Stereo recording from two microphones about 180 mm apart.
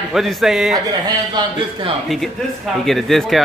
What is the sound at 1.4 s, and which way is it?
Speech, 25° right (ahead or behind).